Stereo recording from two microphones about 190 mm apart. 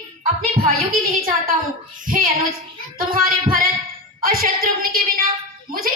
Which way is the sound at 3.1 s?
50° right (ahead or behind).